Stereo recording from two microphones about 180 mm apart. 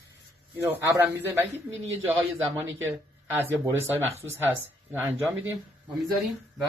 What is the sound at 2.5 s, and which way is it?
Speech, 10° right (ahead or behind).